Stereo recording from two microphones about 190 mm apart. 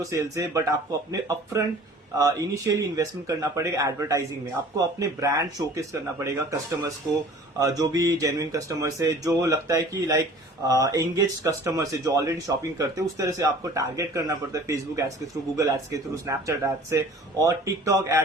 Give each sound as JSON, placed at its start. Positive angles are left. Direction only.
{"t": 0.0, "sound": "speech", "side_deg": -15}